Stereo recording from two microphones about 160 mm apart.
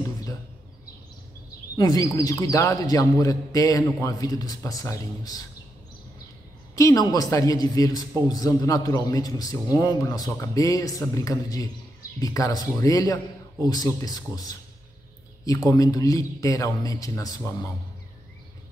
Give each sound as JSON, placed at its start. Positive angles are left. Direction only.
{"t": 1.8, "sound": "a man's voice", "side_deg": 25}
{"t": 6.7, "sound": "a man's voice", "side_deg": 20}